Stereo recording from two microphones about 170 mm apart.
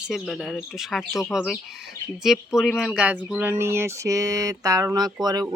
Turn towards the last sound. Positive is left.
turn(degrees=-25)  # may be behind; listen again after turning